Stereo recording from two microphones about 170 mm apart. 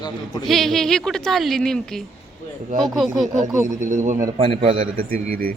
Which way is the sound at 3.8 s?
45° right (ahead or behind).